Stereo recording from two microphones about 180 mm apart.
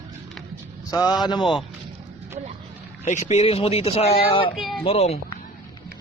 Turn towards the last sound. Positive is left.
turn(degrees=35)  # may be behind; listen again after turning